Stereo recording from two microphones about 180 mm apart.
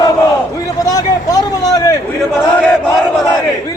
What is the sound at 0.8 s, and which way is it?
Speech, 20° left (ahead or behind).